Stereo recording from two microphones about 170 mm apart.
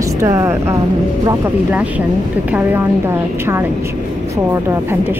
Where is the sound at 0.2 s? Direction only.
20° right (ahead or behind).